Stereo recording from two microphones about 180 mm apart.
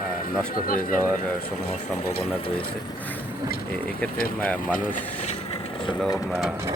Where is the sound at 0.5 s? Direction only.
50° left (ahead or behind).